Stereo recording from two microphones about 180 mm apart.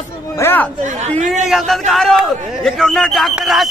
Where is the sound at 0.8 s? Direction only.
40° right (ahead or behind).